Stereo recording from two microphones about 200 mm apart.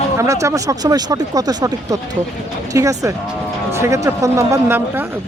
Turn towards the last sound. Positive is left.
turn(degrees=-10)  # may be behind; listen again after turning